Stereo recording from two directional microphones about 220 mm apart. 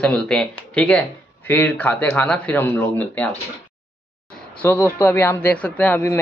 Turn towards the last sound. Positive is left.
turn(degrees=10)  # may be behind; listen again after turning